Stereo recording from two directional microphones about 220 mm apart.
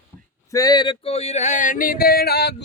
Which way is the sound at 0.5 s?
20° left (ahead or behind).